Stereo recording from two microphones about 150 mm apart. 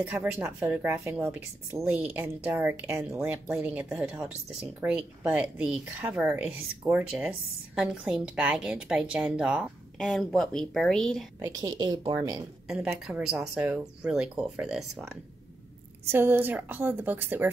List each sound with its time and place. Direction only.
0.0 s speech: 10° right (ahead or behind)
11.3 s a woman's voice: 20° right (ahead or behind)
12.6 s speech: 5° right (ahead or behind)
16.1 s speech: 15° right (ahead or behind)